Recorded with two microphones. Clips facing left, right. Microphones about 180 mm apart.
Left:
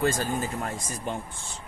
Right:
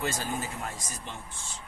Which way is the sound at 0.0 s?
50° left (ahead or behind).